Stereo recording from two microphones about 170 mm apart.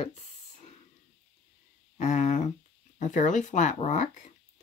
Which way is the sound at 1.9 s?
45° left (ahead or behind).